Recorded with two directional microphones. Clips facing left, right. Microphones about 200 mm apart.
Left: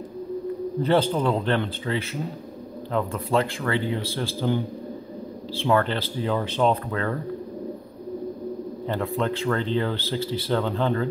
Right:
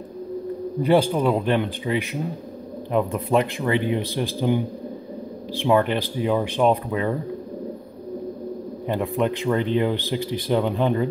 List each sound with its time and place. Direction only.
0.7 s speech: 10° right (ahead or behind)
8.8 s speech: 15° right (ahead or behind)